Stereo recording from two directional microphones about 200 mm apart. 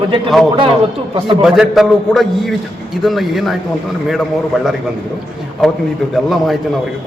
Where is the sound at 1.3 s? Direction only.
Centre (ahead or behind).